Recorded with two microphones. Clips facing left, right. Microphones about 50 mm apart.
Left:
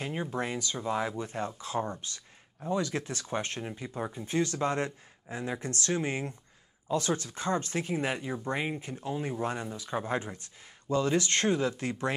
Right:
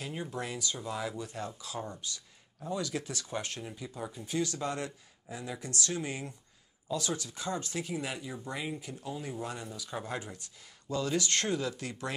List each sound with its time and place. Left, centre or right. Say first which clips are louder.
0.0 s speech: left 5 dB; left